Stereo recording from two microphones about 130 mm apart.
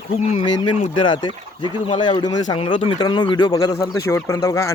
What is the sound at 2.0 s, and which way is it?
Speech, 35° left (ahead or behind).